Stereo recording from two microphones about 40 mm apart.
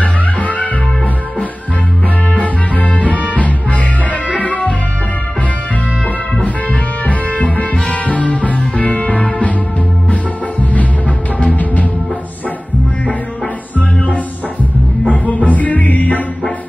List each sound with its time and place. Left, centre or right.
0.0 s music: left
2.3 s music: left
6.3 s music: left
11.3 s music: left
15.0 s music: left